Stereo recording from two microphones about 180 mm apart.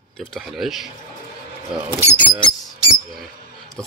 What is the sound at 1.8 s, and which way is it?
Speech, 15° right (ahead or behind).